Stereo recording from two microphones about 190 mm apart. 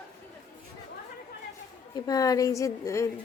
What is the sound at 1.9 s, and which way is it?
A woman's voice, 20° left (ahead or behind).